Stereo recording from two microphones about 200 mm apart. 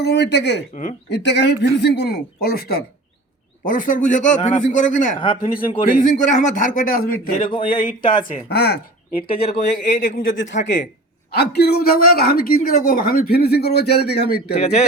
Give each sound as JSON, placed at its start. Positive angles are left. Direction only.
{"t": 0.0, "sound": "a man's voice", "side_deg": 55}
{"t": 7.5, "sound": "speech", "side_deg": 25}
{"t": 8.1, "sound": "speech", "side_deg": 45}
{"t": 9.9, "sound": "speech", "side_deg": 65}
{"t": 14.5, "sound": "a man's voice", "side_deg": 30}